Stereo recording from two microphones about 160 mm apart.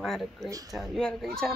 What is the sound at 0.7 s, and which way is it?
Speech, centre (ahead or behind).